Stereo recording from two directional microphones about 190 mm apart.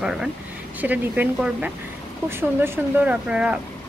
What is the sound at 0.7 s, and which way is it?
Speech, 10° right (ahead or behind).